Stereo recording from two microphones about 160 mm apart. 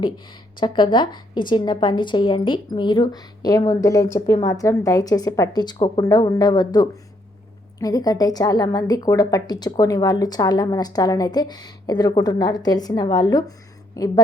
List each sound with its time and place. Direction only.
0.6 s a woman's voice: 30° left (ahead or behind)